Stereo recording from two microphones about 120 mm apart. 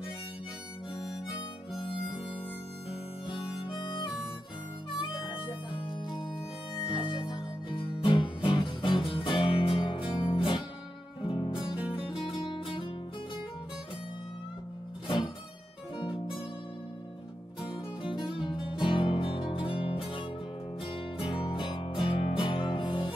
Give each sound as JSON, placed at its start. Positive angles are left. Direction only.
{"t": 1.3, "sound": "harmonica", "side_deg": 45}
{"t": 3.3, "sound": "harmonica", "side_deg": 45}
{"t": 4.9, "sound": "music", "side_deg": 40}
{"t": 15.0, "sound": "music", "side_deg": 45}
{"t": 17.6, "sound": "music", "side_deg": 45}